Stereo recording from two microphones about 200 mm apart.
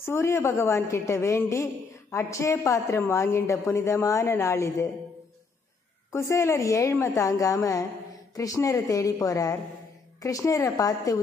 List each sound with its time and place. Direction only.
0.0 s a woman's voice: 15° left (ahead or behind)
6.1 s a woman's voice: 15° left (ahead or behind)